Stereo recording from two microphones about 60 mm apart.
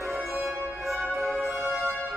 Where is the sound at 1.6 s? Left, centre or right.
Right.